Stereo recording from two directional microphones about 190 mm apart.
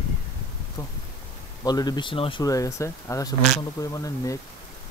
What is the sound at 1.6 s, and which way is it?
Speech, 20° left (ahead or behind).